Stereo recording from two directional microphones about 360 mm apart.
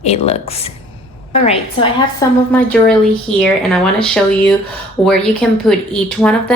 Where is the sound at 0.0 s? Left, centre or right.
Centre.